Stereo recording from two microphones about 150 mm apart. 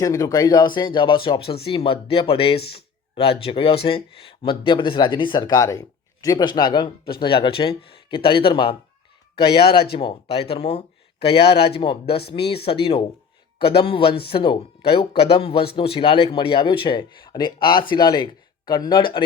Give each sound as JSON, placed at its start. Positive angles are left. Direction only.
{"t": 0.0, "sound": "speech", "side_deg": 20}
{"t": 9.9, "sound": "speech", "side_deg": 35}